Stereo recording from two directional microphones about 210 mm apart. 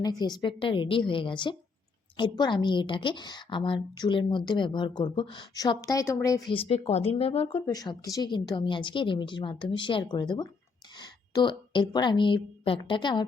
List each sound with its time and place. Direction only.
0.0 s a woman's voice: 20° left (ahead or behind)
6.5 s a woman's voice: 30° left (ahead or behind)